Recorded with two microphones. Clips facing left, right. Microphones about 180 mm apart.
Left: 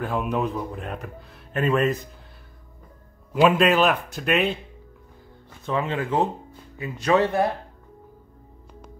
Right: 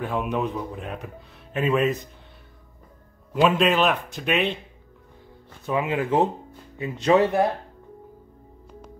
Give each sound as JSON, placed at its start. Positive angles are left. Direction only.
{"t": 0.0, "sound": "speech", "side_deg": 0}
{"t": 3.3, "sound": "speech", "side_deg": 0}
{"t": 5.7, "sound": "speech", "side_deg": -10}